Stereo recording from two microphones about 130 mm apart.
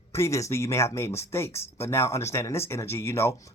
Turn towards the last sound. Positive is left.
turn(degrees=20)  # may be behind; listen again after turning